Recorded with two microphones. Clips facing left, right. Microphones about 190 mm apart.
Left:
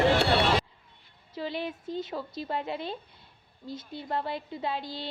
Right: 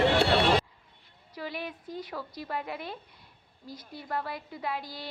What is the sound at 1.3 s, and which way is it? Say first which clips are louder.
Speech: left 4 dB; 25° left (ahead or behind).